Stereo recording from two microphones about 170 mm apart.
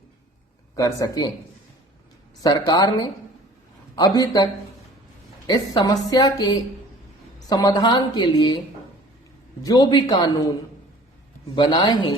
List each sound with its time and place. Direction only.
0.8 s a woman's voice: 20° left (ahead or behind)
2.4 s a woman's voice: 25° left (ahead or behind)
5.5 s a woman's voice: 20° left (ahead or behind)
9.6 s a woman's voice: 25° left (ahead or behind)
11.5 s a woman's voice: 25° left (ahead or behind)